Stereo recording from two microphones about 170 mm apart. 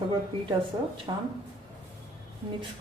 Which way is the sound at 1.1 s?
30° right (ahead or behind).